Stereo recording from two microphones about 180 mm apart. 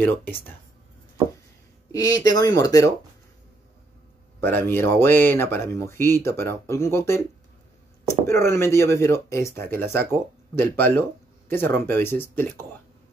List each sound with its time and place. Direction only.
0.0 s speech: 10° left (ahead or behind)
1.9 s speech: 20° left (ahead or behind)
4.4 s speech: 10° left (ahead or behind)